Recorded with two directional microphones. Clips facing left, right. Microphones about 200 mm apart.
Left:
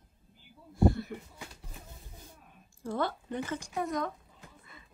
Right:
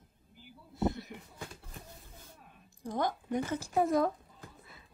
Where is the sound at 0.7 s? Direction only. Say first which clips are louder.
Left 6 dB; 20° right (ahead or behind).